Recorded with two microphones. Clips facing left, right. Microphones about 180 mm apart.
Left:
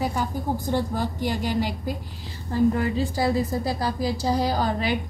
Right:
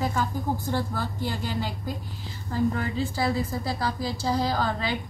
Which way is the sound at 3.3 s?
15° left (ahead or behind).